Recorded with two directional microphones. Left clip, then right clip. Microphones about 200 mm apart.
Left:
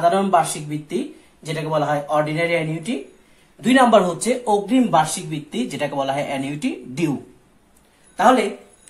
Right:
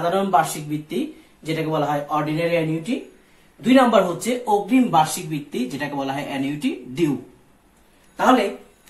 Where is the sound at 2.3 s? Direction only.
10° left (ahead or behind).